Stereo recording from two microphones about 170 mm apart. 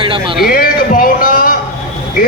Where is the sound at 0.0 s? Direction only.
30° right (ahead or behind).